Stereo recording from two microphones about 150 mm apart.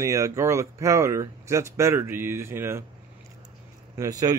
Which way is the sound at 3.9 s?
25° right (ahead or behind).